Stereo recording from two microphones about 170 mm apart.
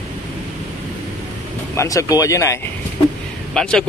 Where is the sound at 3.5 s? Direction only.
5° left (ahead or behind).